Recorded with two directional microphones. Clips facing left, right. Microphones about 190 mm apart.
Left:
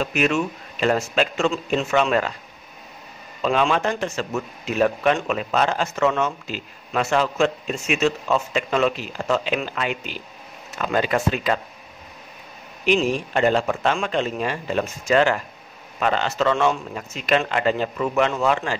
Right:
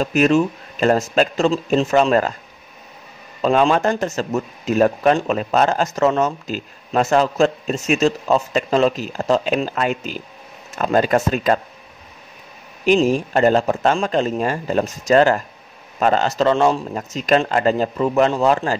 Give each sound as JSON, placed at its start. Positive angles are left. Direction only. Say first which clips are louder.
{"t": 0.0, "sound": "speech", "louder": "right 6 dB", "side_deg": -40}
{"t": 3.4, "sound": "speech", "louder": "right 5 dB", "side_deg": -40}
{"t": 12.8, "sound": "speech", "louder": "right 5 dB", "side_deg": -45}